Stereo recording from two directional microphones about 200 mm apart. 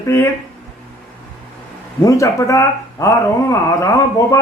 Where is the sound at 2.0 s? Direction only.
15° left (ahead or behind).